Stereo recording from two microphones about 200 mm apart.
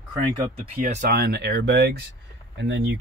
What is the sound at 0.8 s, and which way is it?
Speech, 40° right (ahead or behind).